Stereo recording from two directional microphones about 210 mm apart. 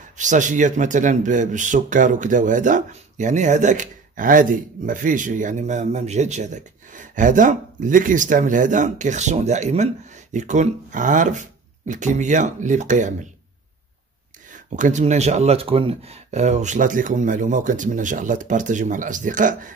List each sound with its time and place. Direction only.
0.2 s speech: 35° right (ahead or behind)
14.5 s speech: 35° right (ahead or behind)